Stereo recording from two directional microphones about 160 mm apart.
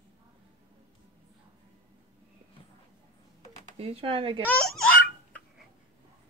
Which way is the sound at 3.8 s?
35° right (ahead or behind).